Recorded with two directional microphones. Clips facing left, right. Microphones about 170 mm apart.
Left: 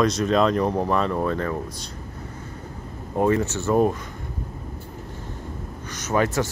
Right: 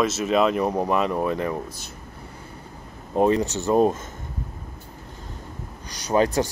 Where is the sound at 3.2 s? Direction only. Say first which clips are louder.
Right 1 dB; 20° right (ahead or behind).